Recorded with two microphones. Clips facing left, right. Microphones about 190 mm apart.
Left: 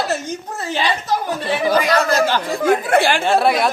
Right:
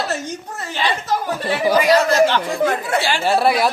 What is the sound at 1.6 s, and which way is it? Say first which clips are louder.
Speech: right 3 dB; 10° right (ahead or behind).